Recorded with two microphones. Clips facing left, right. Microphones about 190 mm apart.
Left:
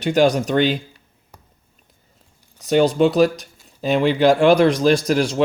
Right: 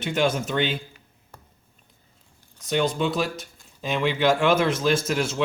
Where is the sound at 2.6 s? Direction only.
40° left (ahead or behind).